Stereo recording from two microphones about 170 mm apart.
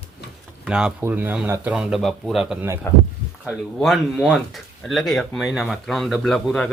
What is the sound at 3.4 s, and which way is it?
Speech, centre (ahead or behind).